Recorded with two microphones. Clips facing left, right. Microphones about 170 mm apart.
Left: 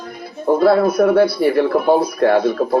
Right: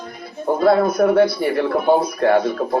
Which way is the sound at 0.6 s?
30° left (ahead or behind).